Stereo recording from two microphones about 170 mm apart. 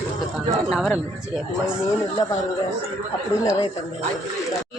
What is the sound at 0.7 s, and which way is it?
Speech, centre (ahead or behind).